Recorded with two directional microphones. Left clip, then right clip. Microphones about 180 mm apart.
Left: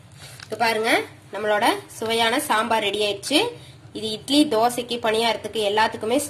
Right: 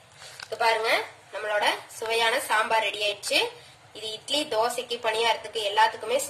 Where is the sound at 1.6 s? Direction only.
35° left (ahead or behind).